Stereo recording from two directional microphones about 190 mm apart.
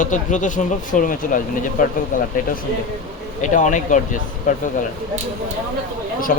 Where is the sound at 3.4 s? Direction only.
40° left (ahead or behind).